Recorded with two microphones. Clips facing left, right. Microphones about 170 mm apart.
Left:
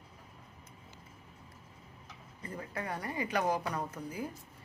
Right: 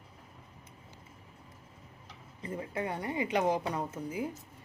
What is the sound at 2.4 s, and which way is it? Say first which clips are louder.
A woman's voice: right 5 dB; 25° right (ahead or behind).